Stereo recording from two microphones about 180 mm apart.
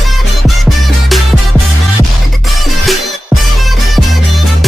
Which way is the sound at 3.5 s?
Centre (ahead or behind).